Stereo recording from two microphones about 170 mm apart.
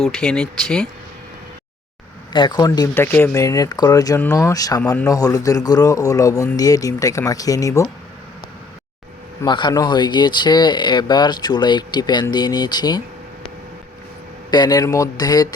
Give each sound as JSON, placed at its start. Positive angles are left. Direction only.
{"t": 0.0, "sound": "speech", "side_deg": 5}
{"t": 2.3, "sound": "speech", "side_deg": 25}
{"t": 9.4, "sound": "speech", "side_deg": 25}
{"t": 14.5, "sound": "speech", "side_deg": 25}